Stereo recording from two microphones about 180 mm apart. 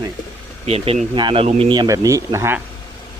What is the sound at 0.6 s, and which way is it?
Speech, 35° right (ahead or behind).